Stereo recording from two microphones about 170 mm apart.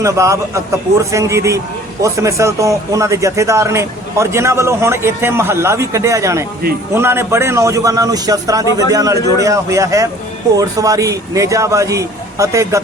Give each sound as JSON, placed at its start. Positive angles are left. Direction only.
{"t": 0.0, "sound": "a man's voice", "side_deg": -15}